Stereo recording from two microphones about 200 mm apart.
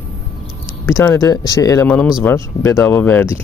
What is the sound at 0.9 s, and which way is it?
Speech, 15° left (ahead or behind).